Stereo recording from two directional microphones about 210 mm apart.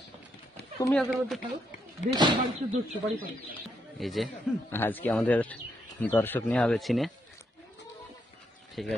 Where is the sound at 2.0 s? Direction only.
35° left (ahead or behind).